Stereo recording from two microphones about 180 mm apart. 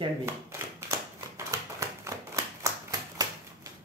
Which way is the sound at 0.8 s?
15° right (ahead or behind).